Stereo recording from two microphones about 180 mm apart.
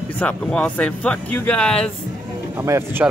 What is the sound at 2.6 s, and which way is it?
Speech, 15° right (ahead or behind).